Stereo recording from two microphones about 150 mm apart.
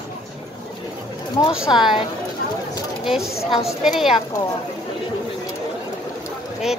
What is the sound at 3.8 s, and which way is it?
Speech, 5° right (ahead or behind).